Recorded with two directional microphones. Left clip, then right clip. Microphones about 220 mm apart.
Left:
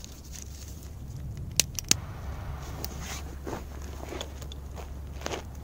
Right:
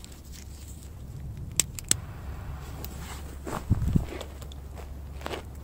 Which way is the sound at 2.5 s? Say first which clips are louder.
Left 4 dB; 10° left (ahead or behind).